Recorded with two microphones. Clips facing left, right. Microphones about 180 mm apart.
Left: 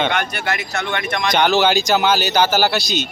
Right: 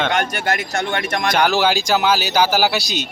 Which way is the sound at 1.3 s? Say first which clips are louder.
Left 2 dB; centre (ahead or behind).